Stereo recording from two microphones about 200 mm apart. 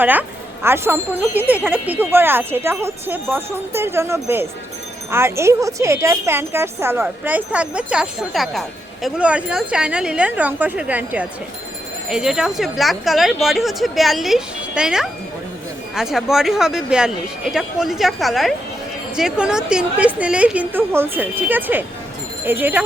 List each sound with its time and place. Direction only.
0.0 s speech: 10° right (ahead or behind)